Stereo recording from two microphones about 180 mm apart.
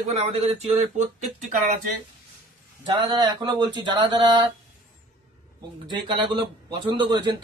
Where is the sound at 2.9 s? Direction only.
25° right (ahead or behind).